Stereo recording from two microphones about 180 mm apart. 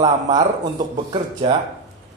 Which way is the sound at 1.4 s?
30° right (ahead or behind).